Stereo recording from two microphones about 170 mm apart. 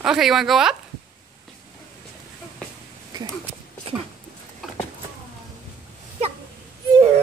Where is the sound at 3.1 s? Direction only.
25° right (ahead or behind).